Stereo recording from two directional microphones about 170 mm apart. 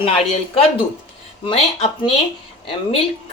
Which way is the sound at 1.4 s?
35° left (ahead or behind).